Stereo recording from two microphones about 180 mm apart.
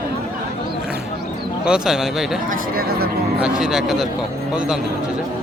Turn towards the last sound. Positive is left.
turn(degrees=0)  # may be behind; listen again after turning